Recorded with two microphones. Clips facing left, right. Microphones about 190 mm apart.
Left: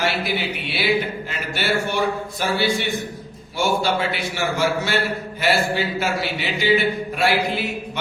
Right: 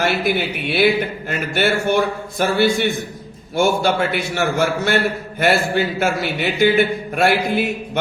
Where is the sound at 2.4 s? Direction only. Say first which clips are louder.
Right 6 dB; 50° right (ahead or behind).